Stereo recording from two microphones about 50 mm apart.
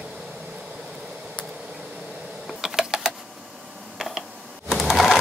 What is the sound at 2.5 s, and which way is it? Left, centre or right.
Typing, centre.